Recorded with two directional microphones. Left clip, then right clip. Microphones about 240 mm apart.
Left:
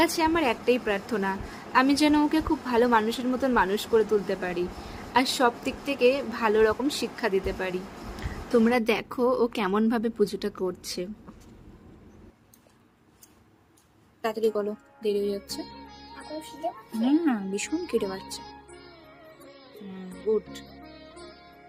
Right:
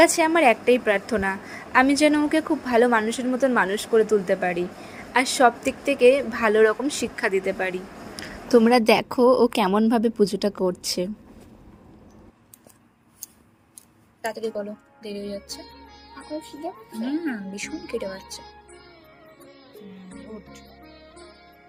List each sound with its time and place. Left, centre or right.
0.0 s a woman's voice: centre
14.3 s music: centre
16.9 s music: centre
18.0 s music: centre
20.8 s music: centre